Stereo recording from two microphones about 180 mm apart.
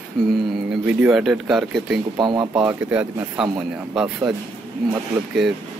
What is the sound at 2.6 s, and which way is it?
Speech, 10° right (ahead or behind).